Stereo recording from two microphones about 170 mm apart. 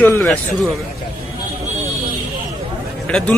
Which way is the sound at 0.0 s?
10° left (ahead or behind).